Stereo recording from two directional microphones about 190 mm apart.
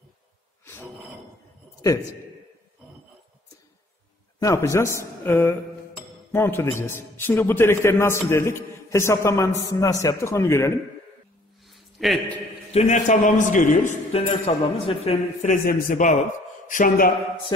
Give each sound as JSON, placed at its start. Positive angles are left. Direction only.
{"t": 4.4, "sound": "a man's voice", "side_deg": 15}
{"t": 11.7, "sound": "a sound", "side_deg": 0}
{"t": 12.7, "sound": "a man's voice", "side_deg": 40}
{"t": 14.2, "sound": "a man's voice", "side_deg": 30}